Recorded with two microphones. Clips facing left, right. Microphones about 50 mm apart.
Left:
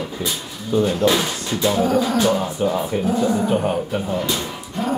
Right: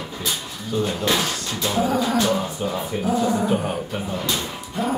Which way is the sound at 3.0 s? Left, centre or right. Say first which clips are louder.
Right 1 dB; centre.